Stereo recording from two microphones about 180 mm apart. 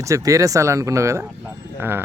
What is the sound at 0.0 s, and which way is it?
Speech, 15° right (ahead or behind).